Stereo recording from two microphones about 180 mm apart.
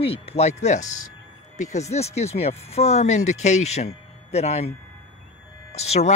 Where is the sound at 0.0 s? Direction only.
35° left (ahead or behind).